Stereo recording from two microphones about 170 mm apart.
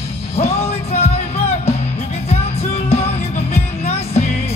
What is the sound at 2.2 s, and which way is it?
Music, 40° left (ahead or behind).